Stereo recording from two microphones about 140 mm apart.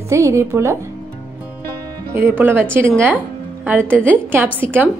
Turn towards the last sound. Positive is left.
turn(degrees=-15)  # may be behind; listen again after turning